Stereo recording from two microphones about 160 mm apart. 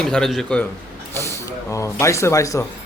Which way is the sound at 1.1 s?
15° left (ahead or behind).